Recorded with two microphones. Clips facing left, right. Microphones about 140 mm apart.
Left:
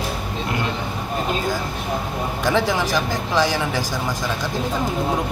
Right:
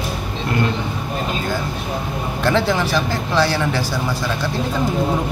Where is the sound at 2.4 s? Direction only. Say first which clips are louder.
Right 2 dB; 15° left (ahead or behind).